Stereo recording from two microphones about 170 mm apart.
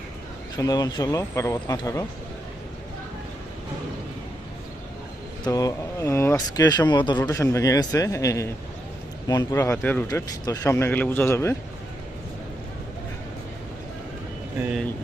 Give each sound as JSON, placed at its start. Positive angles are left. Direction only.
{"t": 0.5, "sound": "speech", "side_deg": 25}
{"t": 5.5, "sound": "speech", "side_deg": 20}
{"t": 10.1, "sound": "speech", "side_deg": 20}
{"t": 14.6, "sound": "speech", "side_deg": -5}